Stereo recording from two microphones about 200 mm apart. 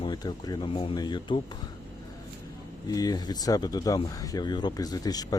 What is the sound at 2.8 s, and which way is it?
Speech, 20° left (ahead or behind).